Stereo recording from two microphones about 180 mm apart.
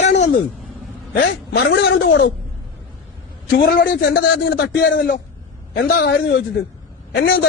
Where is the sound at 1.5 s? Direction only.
65° left (ahead or behind).